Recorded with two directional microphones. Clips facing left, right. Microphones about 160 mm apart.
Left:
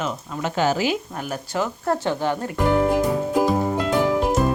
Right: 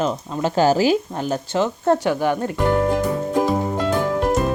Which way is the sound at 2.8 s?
10° left (ahead or behind).